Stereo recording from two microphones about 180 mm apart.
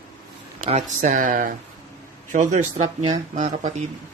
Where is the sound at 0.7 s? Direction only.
40° right (ahead or behind).